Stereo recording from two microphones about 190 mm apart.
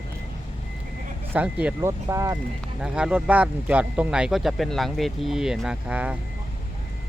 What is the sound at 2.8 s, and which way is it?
Speech, 5° right (ahead or behind).